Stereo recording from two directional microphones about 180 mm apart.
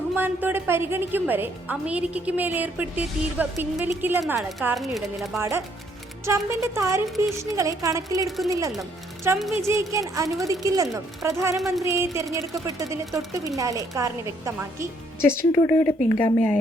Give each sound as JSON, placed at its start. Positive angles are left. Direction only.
{"t": 0.2, "sound": "a woman's voice", "side_deg": -10}
{"t": 5.4, "sound": "a woman's voice", "side_deg": -15}
{"t": 15.2, "sound": "a woman's voice", "side_deg": 15}